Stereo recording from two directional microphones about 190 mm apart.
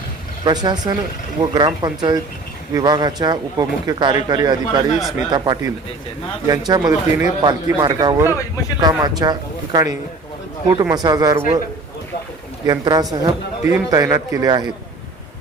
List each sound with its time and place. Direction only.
0.4 s speech: 20° right (ahead or behind)
12.6 s a man's voice: 20° right (ahead or behind)